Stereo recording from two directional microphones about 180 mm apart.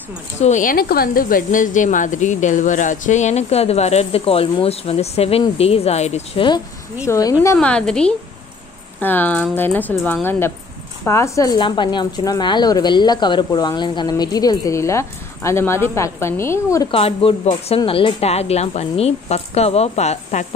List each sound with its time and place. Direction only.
0.4 s a woman's voice: 45° left (ahead or behind); by 7.3 s 20° left (ahead or behind)
7.5 s a woman's voice: 5° left (ahead or behind)
16.9 s a woman's voice: 30° left (ahead or behind)